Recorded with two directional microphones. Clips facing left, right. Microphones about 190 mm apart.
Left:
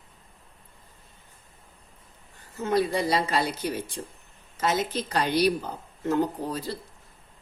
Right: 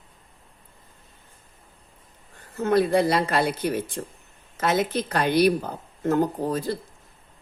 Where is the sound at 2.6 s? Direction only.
55° right (ahead or behind).